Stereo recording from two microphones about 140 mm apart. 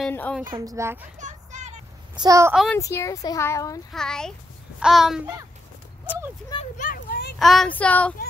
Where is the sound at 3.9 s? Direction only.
5° left (ahead or behind).